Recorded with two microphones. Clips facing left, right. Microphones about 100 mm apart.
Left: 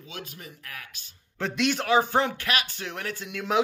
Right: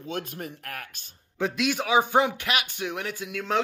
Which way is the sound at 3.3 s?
5° left (ahead or behind).